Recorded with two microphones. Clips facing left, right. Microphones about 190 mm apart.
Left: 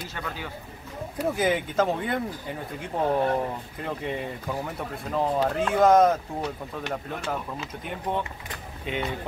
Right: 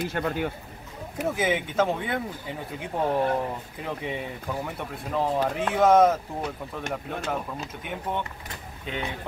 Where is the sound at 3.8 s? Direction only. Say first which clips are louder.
Left 2 dB; centre (ahead or behind).